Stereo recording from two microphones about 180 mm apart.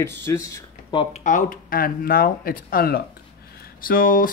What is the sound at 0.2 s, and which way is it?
Speech, 15° left (ahead or behind).